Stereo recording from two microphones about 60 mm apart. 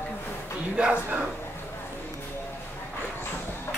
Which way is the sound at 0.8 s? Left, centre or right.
Centre.